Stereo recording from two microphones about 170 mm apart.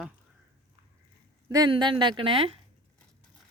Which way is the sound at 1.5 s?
25° right (ahead or behind).